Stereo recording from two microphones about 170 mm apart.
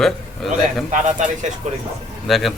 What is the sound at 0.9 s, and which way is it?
Speech, 45° right (ahead or behind).